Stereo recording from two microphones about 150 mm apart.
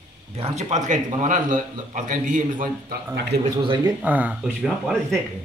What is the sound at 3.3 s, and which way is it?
Speech, 90° right.